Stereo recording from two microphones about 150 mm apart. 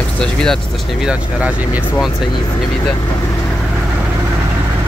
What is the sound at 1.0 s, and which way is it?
Speech, 10° right (ahead or behind).